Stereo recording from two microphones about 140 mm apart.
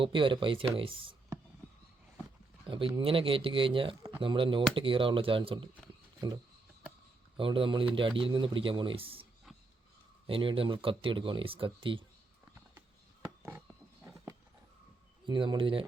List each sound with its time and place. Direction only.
0.0 s speech: 35° right (ahead or behind)
2.6 s speech: 40° right (ahead or behind)
6.1 s a sound: 30° right (ahead or behind)
7.3 s speech: 40° right (ahead or behind)
10.2 s speech: 40° right (ahead or behind)
14.0 s horse: 20° right (ahead or behind)
15.3 s speech: 35° right (ahead or behind)